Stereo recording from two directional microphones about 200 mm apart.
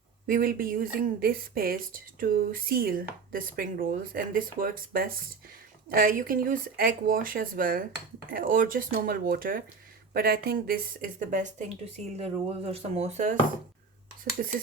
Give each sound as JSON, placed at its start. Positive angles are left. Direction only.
{"t": 0.3, "sound": "speech", "side_deg": -45}